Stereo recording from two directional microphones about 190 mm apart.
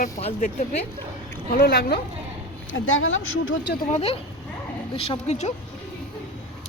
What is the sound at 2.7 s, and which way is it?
Speech, 90° left.